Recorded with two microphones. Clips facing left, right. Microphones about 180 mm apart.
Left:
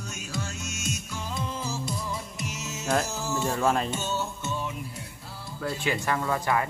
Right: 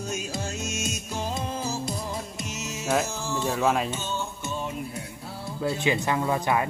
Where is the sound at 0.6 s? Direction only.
90° right.